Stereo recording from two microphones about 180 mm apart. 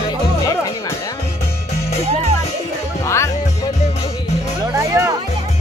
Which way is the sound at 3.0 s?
15° left (ahead or behind).